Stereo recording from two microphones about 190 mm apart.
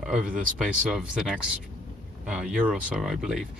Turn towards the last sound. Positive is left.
turn(degrees=0)  # may be behind; listen again after turning